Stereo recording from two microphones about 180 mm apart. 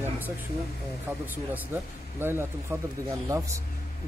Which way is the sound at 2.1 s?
10° right (ahead or behind).